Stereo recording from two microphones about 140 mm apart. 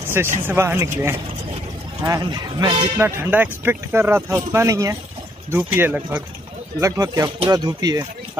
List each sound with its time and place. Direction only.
0.2 s speech: 20° right (ahead or behind)
3.0 s speech: 20° right (ahead or behind)
6.8 s speech: 25° right (ahead or behind)